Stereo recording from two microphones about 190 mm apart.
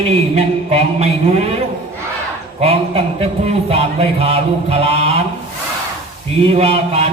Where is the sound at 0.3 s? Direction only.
35° right (ahead or behind).